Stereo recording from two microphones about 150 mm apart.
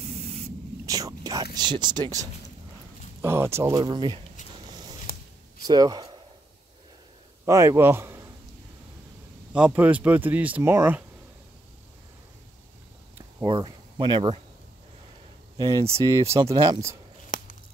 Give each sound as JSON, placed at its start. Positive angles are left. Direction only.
{"t": 0.0, "sound": "spray", "side_deg": -45}
{"t": 0.8, "sound": "speech", "side_deg": -25}
{"t": 3.7, "sound": "speech", "side_deg": -30}
{"t": 5.7, "sound": "speech", "side_deg": -25}
{"t": 7.4, "sound": "a man's voice", "side_deg": -20}
{"t": 9.5, "sound": "speech", "side_deg": -10}
{"t": 13.5, "sound": "speech", "side_deg": -30}
{"t": 15.5, "sound": "speech", "side_deg": -25}
{"t": 17.3, "sound": "a sound", "side_deg": 60}